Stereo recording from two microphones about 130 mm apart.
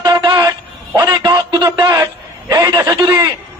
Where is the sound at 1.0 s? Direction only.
30° right (ahead or behind).